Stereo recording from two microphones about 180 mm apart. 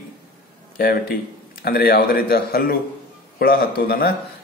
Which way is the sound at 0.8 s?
55° left (ahead or behind).